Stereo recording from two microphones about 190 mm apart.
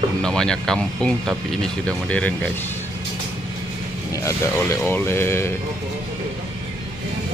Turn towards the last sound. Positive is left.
turn(degrees=15)  # may be behind; listen again after turning